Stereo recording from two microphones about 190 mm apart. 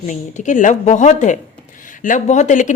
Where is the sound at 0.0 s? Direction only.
40° left (ahead or behind).